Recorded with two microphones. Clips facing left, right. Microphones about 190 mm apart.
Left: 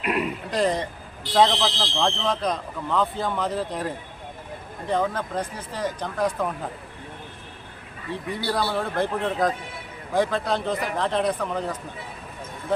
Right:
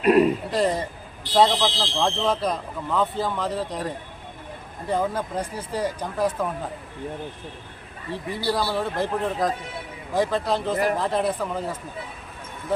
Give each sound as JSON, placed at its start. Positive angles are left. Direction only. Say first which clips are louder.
{"t": 0.0, "sound": "speech", "louder": "right 9 dB", "side_deg": -40}
{"t": 0.5, "sound": "speech", "louder": "even", "side_deg": -5}
{"t": 4.9, "sound": "speech", "louder": "even", "side_deg": -10}
{"t": 8.4, "sound": "speech", "louder": "right 1 dB", "side_deg": 0}